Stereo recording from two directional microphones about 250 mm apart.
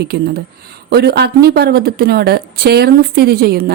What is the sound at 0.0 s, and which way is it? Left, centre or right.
Speech, right.